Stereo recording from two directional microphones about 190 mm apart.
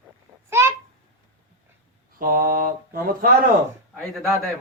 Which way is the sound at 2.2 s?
50° right (ahead or behind).